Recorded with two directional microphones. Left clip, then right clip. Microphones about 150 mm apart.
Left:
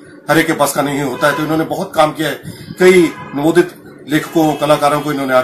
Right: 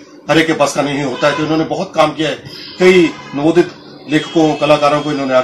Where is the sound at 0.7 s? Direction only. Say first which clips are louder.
Even; 5° right (ahead or behind).